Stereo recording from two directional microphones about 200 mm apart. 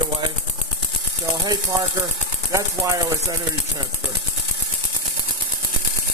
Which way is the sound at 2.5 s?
15° right (ahead or behind).